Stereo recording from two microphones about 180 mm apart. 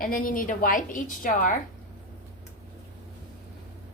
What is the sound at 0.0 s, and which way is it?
A woman's voice, 50° left (ahead or behind).